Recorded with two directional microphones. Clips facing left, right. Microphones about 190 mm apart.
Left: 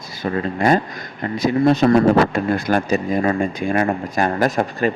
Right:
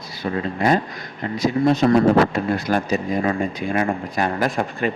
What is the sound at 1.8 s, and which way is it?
Speech, 60° left (ahead or behind).